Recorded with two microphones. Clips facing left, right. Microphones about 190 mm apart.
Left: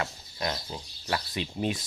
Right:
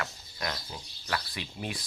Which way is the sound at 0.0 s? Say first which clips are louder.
Left 4 dB; 25° left (ahead or behind).